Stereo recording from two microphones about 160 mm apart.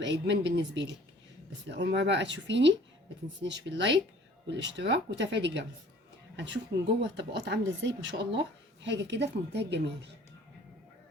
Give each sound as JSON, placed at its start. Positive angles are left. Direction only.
{"t": 0.0, "sound": "speech", "side_deg": -90}